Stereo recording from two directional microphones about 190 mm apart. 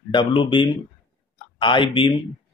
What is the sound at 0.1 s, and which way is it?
Speech, 25° left (ahead or behind).